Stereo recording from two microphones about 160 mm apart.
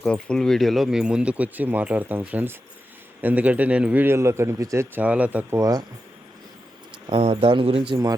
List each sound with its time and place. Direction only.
0.0 s a man's voice: 5° left (ahead or behind); by 5.8 s 20° right (ahead or behind)
7.1 s speech: 40° right (ahead or behind)